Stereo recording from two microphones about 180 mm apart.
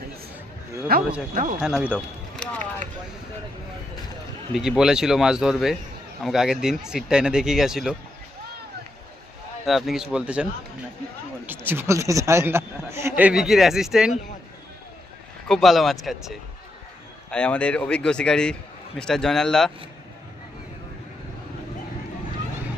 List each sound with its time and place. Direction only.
0.9 s speech: 55° right (ahead or behind)
1.3 s speech: 45° right (ahead or behind)
1.6 s a man's voice: 5° right (ahead or behind)
2.3 s run: 5° left (ahead or behind)
4.8 s speech: 5° right (ahead or behind)
9.6 s a man's voice: centre (ahead or behind)
15.4 s speech: centre (ahead or behind)
17.3 s speech: 5° left (ahead or behind)